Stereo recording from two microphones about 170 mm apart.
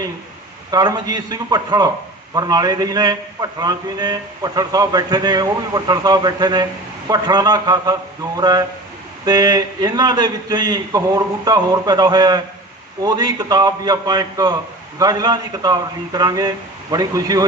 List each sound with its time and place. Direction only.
0.7 s a man's voice: 25° right (ahead or behind)